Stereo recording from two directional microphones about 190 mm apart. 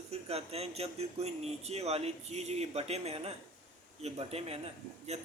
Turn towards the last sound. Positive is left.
turn(degrees=-35)  # may be behind; listen again after turning